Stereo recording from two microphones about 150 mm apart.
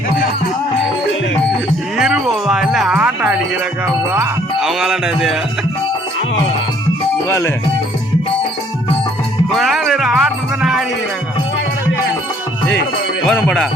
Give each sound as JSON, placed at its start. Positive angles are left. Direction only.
{"t": 2.0, "sound": "music", "side_deg": 0}
{"t": 4.6, "sound": "music", "side_deg": 0}
{"t": 7.3, "sound": "music", "side_deg": 20}
{"t": 9.5, "sound": "music", "side_deg": 0}
{"t": 13.2, "sound": "music", "side_deg": 5}